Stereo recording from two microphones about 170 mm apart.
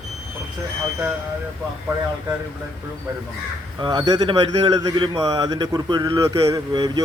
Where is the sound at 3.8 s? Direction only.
25° right (ahead or behind).